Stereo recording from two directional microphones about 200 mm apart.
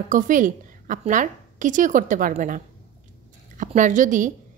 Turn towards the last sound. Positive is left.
turn(degrees=-40)  # may be behind; listen again after turning